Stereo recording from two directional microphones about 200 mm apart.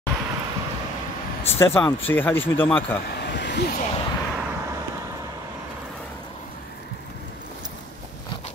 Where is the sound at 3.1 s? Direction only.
55° left (ahead or behind).